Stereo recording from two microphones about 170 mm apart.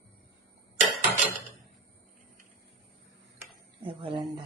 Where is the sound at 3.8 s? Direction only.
30° right (ahead or behind).